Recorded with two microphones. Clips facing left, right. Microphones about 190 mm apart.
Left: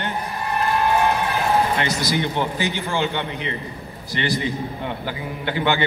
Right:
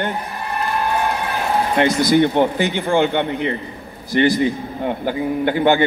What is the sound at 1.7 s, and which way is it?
A man's voice, 55° right (ahead or behind).